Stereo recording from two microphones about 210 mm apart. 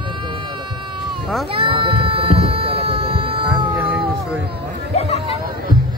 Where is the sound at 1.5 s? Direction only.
25° right (ahead or behind).